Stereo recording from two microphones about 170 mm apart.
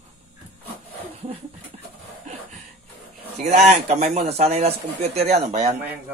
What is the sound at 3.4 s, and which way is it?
A man's voice, 40° right (ahead or behind).